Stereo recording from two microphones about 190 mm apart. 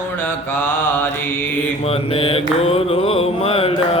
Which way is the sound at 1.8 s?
30° left (ahead or behind).